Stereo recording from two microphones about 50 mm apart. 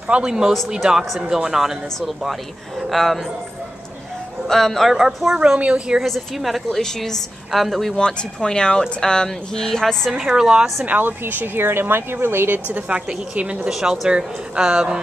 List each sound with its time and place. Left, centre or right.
0.1 s a woman's voice: centre
2.9 s a woman's voice: centre
4.5 s a woman's voice: centre
5.6 s a woman's voice: right
5.9 s a woman's voice: centre
6.8 s a woman's voice: centre
8.4 s speech: centre
10.1 s a woman's voice: centre
10.9 s speech: right
12.8 s a woman's voice: right
13.7 s a woman's voice: centre